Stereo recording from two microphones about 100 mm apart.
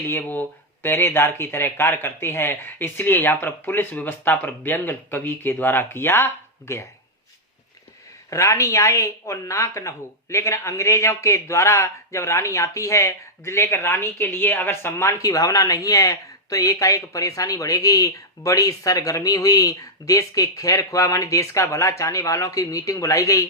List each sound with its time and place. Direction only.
0.1 s a woman's voice: 20° left (ahead or behind)
8.3 s a woman's voice: 30° left (ahead or behind)
15.2 s speech: 35° left (ahead or behind)